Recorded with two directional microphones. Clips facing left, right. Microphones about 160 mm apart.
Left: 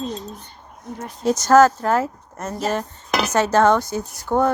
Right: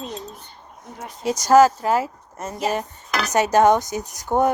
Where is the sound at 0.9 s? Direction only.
10° right (ahead or behind).